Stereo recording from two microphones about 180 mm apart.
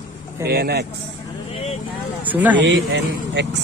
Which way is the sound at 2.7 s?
80° right.